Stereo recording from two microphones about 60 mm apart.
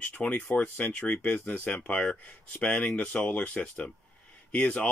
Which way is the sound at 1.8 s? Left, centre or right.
Centre.